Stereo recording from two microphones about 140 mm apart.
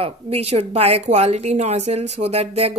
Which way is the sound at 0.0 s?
50° right (ahead or behind).